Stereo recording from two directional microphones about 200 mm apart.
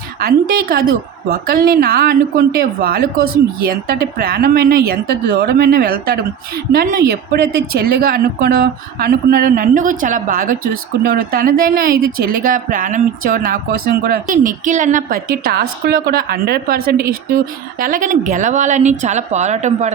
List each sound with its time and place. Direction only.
0.2 s speech: 50° right (ahead or behind); by 19.9 s 35° right (ahead or behind)